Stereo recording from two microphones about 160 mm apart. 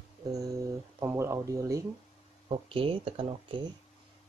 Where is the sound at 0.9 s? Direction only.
15° right (ahead or behind).